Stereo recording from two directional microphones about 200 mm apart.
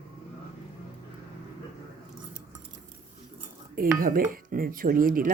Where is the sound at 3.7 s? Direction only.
45° right (ahead or behind).